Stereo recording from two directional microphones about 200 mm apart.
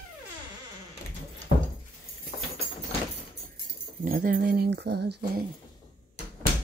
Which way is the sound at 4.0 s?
45° right (ahead or behind).